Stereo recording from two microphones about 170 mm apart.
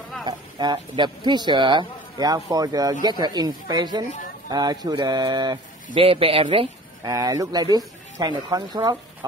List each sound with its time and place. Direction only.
0.2 s a woman's voice: 25° right (ahead or behind)
7.1 s speech: 20° right (ahead or behind)